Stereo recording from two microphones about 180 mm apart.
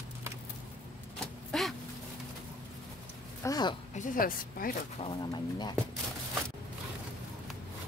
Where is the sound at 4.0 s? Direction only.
50° left (ahead or behind).